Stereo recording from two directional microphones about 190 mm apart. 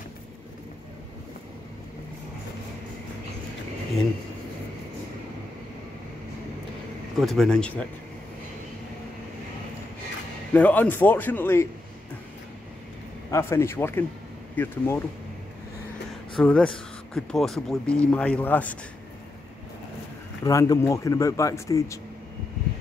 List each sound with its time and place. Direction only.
7.2 s speech: centre (ahead or behind)
10.5 s speech: 10° left (ahead or behind)
13.3 s speech: 15° left (ahead or behind)
16.3 s speech: 5° left (ahead or behind)
20.4 s speech: 20° left (ahead or behind)